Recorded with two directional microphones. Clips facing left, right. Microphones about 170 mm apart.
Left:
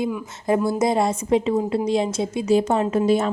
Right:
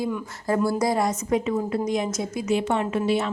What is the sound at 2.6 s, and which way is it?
Speech, 40° left (ahead or behind).